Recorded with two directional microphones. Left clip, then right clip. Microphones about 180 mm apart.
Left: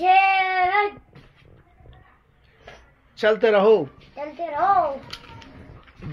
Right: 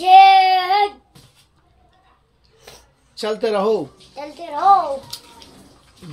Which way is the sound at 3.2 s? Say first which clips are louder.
Left 3 dB; 5° right (ahead or behind).